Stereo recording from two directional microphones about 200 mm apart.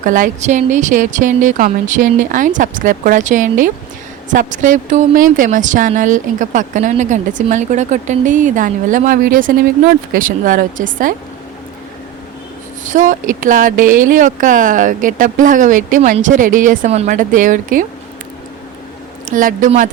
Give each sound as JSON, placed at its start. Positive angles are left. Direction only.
{"t": 0.0, "sound": "a woman's voice", "side_deg": -40}
{"t": 12.8, "sound": "a woman's voice", "side_deg": -40}
{"t": 19.2, "sound": "a woman's voice", "side_deg": -40}